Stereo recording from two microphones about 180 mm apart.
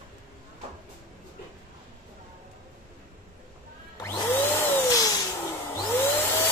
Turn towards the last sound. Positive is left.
turn(degrees=10)  # may be behind; listen again after turning